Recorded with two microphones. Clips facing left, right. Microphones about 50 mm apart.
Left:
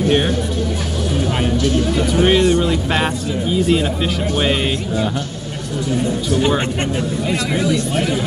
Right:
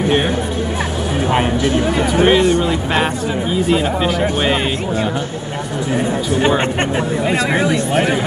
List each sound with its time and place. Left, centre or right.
1.3 s speech: right
2.2 s speech: centre
6.6 s speech: right